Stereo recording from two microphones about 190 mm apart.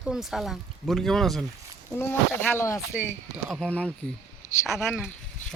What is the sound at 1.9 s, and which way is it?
Speech, 10° left (ahead or behind).